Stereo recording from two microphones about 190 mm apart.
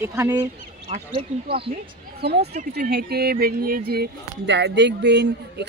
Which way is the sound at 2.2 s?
60° right (ahead or behind).